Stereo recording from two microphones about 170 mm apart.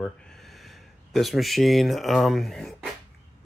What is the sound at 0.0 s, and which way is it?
Speech, centre (ahead or behind).